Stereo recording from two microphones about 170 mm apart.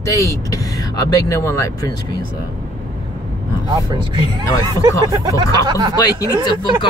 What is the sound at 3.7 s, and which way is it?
Speech, 25° right (ahead or behind).